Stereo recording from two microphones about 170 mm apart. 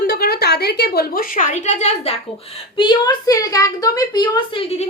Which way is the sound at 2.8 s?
25° left (ahead or behind).